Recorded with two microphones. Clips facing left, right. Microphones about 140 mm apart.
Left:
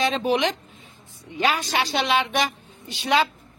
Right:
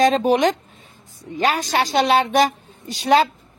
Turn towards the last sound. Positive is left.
turn(degrees=-40)  # may be behind; listen again after turning